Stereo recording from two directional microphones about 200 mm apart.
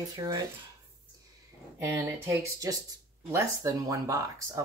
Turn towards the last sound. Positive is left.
turn(degrees=-15)  # may be behind; listen again after turning